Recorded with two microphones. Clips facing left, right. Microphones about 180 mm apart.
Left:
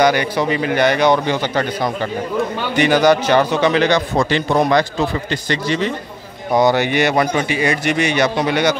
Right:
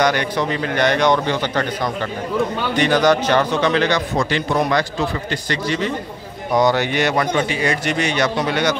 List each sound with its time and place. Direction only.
0.0 s a man's voice: 5° left (ahead or behind)
4.3 s a man's voice: 25° left (ahead or behind)
6.6 s a man's voice: 10° left (ahead or behind)